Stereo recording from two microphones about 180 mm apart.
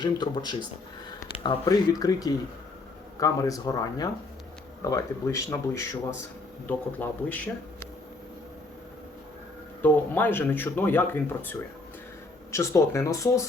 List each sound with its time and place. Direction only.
0.0 s speech: 25° left (ahead or behind)
9.8 s speech: 10° left (ahead or behind)